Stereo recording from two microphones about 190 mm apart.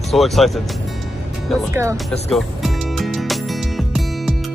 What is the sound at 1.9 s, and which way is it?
Music, centre (ahead or behind).